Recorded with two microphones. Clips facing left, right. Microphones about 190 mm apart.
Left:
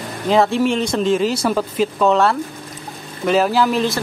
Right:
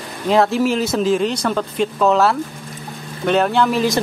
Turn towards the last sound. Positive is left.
turn(degrees=0)  # may be behind; listen again after turning